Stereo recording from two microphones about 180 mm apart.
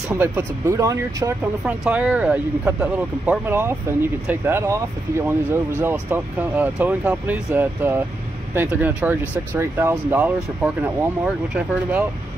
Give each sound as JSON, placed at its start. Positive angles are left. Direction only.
{"t": 0.1, "sound": "speech", "side_deg": -10}
{"t": 1.4, "sound": "speech", "side_deg": -10}